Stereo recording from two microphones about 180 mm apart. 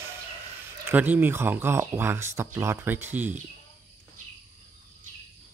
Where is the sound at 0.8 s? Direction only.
10° right (ahead or behind).